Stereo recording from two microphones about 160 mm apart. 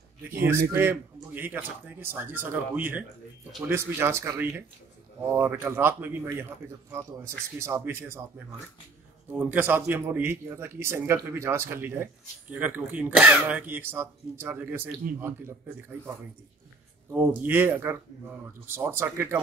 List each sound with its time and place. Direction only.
0.5 s a man's voice: 15° right (ahead or behind)
9.3 s a man's voice: 10° right (ahead or behind)
17.1 s a man's voice: 10° right (ahead or behind)